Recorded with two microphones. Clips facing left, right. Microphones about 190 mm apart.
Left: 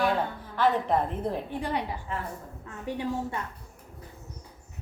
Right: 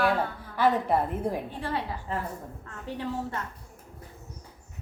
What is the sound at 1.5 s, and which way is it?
A woman's voice, 15° left (ahead or behind).